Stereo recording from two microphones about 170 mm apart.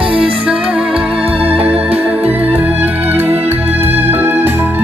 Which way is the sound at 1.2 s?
35° right (ahead or behind).